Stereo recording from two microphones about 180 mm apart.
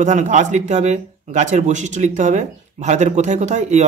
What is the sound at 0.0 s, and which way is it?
Speech, 40° right (ahead or behind).